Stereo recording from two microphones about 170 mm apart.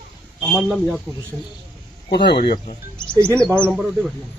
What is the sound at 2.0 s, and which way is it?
Speech, 80° left.